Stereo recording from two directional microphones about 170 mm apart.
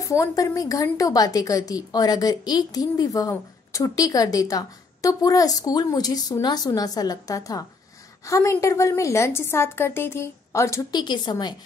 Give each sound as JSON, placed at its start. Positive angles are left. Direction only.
{"t": 0.1, "sound": "a woman's voice", "side_deg": 20}